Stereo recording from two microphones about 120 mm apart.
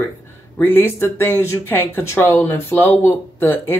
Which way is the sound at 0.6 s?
15° left (ahead or behind).